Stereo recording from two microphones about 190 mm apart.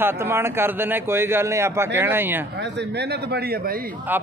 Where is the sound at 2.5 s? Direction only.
65° right (ahead or behind).